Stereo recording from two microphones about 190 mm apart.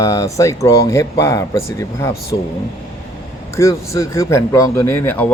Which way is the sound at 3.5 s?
15° left (ahead or behind).